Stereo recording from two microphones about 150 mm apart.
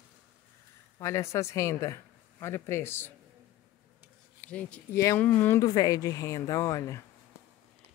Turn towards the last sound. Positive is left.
turn(degrees=20)  # may be behind; listen again after turning